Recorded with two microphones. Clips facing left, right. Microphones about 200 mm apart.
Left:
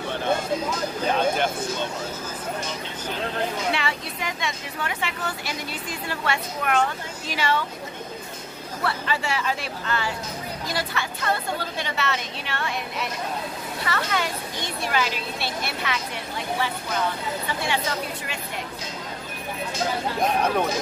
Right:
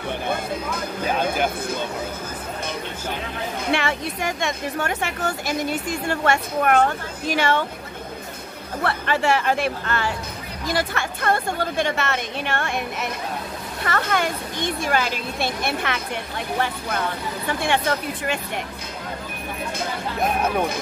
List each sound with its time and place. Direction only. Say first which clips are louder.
1.0 s speech: even; 5° right (ahead or behind)
2.6 s speech: right 3 dB; 55° right (ahead or behind)
8.8 s speech: right 5 dB; 55° right (ahead or behind)
20.2 s speech: right 1 dB; 5° right (ahead or behind)